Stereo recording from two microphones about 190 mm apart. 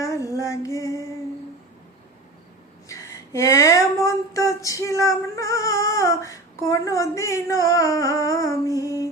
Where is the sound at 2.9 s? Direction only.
15° left (ahead or behind).